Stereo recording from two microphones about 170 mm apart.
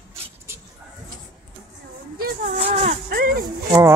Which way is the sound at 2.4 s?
40° right (ahead or behind).